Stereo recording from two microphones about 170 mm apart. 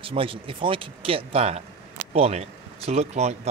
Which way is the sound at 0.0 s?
30° right (ahead or behind).